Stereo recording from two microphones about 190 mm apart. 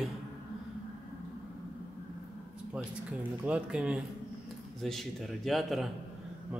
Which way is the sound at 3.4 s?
5° right (ahead or behind).